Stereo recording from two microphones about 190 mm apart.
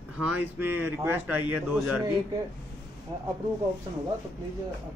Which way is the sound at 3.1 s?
20° right (ahead or behind).